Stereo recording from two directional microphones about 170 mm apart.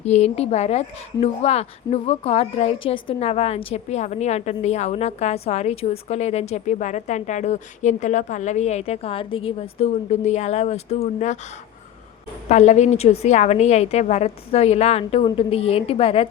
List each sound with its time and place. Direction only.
0.0 s a woman's voice: 40° left (ahead or behind)
12.5 s a woman's voice: 45° left (ahead or behind)